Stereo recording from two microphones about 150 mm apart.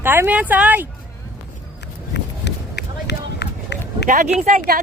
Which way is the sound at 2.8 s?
90° left.